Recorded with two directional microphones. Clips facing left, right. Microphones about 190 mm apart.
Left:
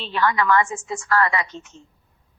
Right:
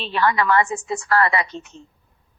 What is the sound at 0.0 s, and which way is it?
A woman's voice, 15° right (ahead or behind).